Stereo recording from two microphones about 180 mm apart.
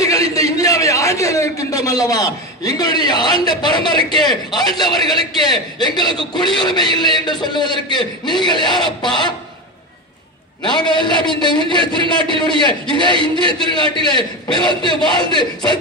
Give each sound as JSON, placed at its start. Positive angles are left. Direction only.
{"t": 0.0, "sound": "a sound", "side_deg": 20}
{"t": 2.8, "sound": "a man's voice", "side_deg": 20}
{"t": 11.1, "sound": "a man's voice", "side_deg": -30}